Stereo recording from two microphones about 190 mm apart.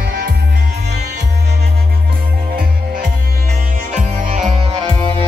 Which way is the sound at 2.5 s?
50° right (ahead or behind).